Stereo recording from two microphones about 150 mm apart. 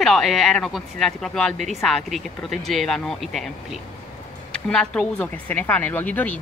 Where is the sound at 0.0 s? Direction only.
Centre (ahead or behind).